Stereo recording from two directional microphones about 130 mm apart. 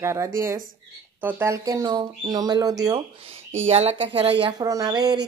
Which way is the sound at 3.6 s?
50° right (ahead or behind).